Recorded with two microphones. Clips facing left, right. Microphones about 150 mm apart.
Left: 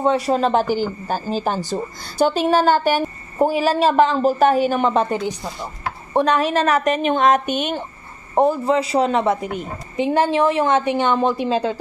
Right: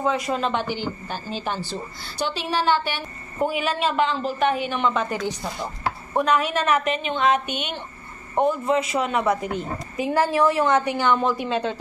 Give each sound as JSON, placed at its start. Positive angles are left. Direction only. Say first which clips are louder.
{"t": 0.0, "sound": "a woman's voice", "louder": "left 6 dB", "side_deg": 30}